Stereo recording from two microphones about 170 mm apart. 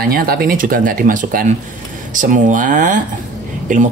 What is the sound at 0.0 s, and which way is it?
Speech, 60° right (ahead or behind).